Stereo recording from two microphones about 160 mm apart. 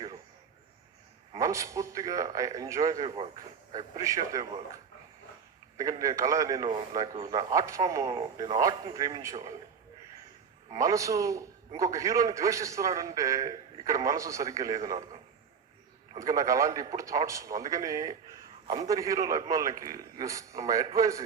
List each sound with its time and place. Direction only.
1.3 s a man's voice: 20° right (ahead or behind)
5.7 s a man's voice: 20° right (ahead or behind)
10.7 s a man's voice: 20° right (ahead or behind)
16.1 s a man's voice: 20° right (ahead or behind)